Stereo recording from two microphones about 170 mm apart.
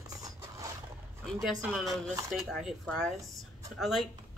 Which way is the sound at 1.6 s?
20° right (ahead or behind).